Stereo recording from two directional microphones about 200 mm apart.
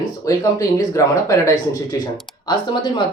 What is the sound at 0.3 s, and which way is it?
Speech, 15° left (ahead or behind).